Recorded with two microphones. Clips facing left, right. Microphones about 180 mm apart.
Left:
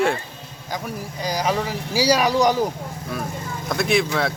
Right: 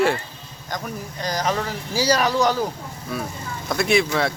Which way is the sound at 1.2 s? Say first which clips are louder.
Left 1 dB; 10° left (ahead or behind).